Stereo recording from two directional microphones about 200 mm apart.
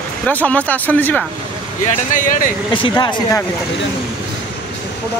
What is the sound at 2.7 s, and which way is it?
Speech, 25° left (ahead or behind).